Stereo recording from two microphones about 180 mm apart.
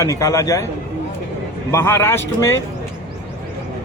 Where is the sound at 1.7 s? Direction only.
15° left (ahead or behind).